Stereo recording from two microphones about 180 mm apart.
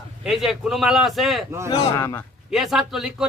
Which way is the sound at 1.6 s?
25° left (ahead or behind).